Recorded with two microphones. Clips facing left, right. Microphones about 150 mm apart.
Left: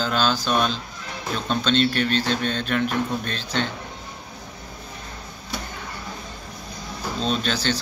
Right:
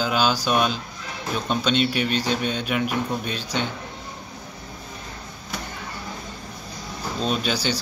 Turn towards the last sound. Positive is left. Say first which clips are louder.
# even
turn(degrees=-10)  # may be behind; listen again after turning